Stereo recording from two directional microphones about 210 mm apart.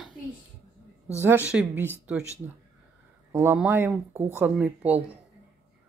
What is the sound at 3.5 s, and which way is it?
Speech, 10° right (ahead or behind).